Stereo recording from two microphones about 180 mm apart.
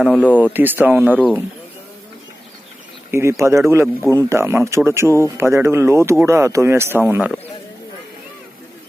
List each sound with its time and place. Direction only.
0.0 s speech: 5° right (ahead or behind)
3.1 s speech: 15° right (ahead or behind)